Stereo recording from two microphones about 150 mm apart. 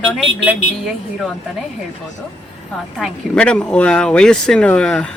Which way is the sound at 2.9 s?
5° left (ahead or behind).